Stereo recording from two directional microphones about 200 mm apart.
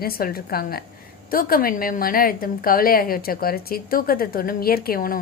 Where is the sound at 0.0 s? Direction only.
50° left (ahead or behind).